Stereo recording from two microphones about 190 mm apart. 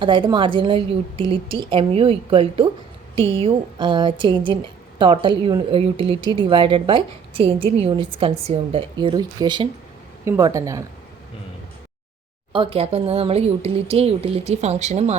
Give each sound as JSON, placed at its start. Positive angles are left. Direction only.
{"t": 0.0, "sound": "speech", "side_deg": -25}
{"t": 12.5, "sound": "a woman's voice", "side_deg": -30}